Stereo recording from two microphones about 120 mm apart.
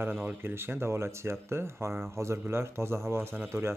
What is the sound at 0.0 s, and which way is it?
Speech, 15° right (ahead or behind).